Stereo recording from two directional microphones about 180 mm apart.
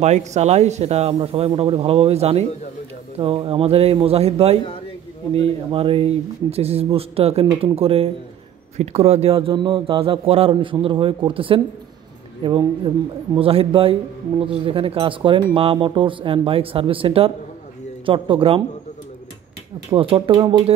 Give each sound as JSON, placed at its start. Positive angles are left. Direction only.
{"t": 0.0, "sound": "a man's voice", "side_deg": -40}
{"t": 19.9, "sound": "a man's voice", "side_deg": -30}